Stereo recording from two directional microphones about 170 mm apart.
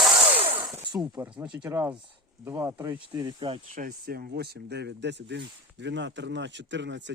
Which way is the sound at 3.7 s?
60° right (ahead or behind).